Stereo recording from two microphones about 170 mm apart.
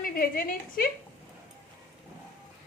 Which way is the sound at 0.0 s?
55° left (ahead or behind).